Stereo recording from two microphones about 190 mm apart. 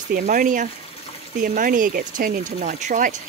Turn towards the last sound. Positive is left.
turn(degrees=-45)  # may be behind; listen again after turning